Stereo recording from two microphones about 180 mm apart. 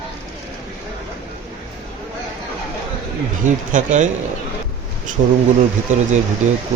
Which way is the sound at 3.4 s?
45° right (ahead or behind).